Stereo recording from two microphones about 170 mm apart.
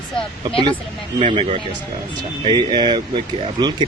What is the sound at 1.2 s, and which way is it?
Speech, 35° right (ahead or behind).